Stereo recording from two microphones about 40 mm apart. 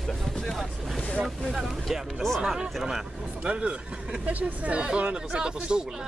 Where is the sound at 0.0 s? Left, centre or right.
Centre.